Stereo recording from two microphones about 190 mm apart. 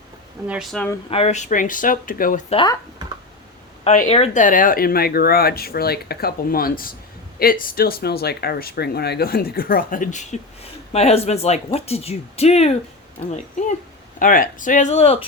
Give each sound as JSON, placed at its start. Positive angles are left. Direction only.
{"t": 0.4, "sound": "speech", "side_deg": -5}
{"t": 1.1, "sound": "speech", "side_deg": 35}
{"t": 2.5, "sound": "speech", "side_deg": 25}
{"t": 3.8, "sound": "speech", "side_deg": 30}
{"t": 14.2, "sound": "speech", "side_deg": 45}